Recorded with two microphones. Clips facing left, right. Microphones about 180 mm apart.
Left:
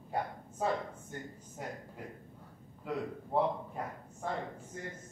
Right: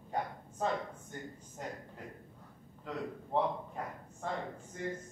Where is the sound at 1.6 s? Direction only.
10° left (ahead or behind).